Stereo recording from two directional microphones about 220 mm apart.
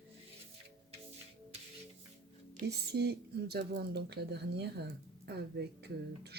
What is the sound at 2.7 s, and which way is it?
Speech, 50° right (ahead or behind).